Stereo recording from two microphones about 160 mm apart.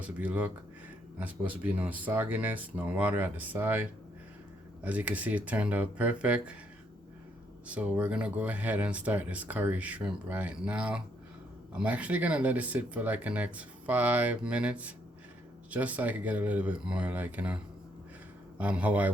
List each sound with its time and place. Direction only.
0.0 s speech: 10° right (ahead or behind)
7.7 s speech: 10° right (ahead or behind)